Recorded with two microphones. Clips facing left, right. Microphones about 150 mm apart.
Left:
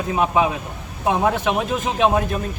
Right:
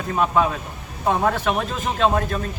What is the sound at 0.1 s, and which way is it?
Speech, 10° left (ahead or behind).